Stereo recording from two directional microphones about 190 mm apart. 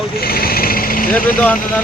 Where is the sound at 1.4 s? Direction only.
5° left (ahead or behind).